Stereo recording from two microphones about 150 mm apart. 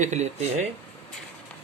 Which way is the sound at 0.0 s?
50° right (ahead or behind).